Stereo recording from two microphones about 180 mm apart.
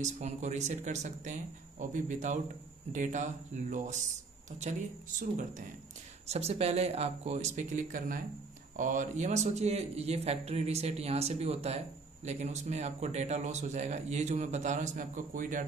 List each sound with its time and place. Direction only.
0.0 s speech: 40° right (ahead or behind)
6.2 s speech: 35° right (ahead or behind)